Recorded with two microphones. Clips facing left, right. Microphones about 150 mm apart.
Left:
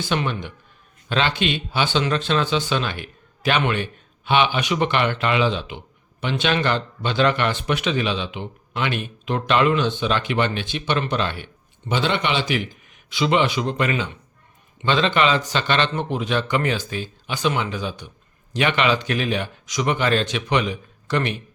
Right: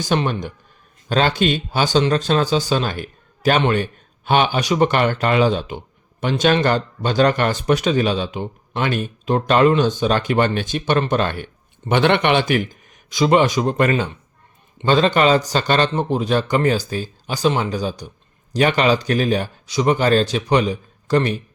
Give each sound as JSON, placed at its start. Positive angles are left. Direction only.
{"t": 0.0, "sound": "speech", "side_deg": -40}
{"t": 11.9, "sound": "speech", "side_deg": -60}